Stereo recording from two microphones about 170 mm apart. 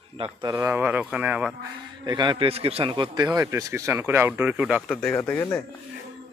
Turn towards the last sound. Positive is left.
turn(degrees=10)  # may be behind; listen again after turning